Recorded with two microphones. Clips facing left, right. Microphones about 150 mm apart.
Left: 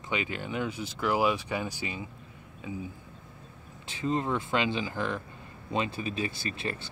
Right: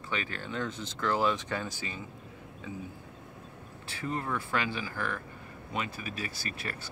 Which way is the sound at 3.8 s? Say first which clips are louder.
Left 5 dB; 20° left (ahead or behind).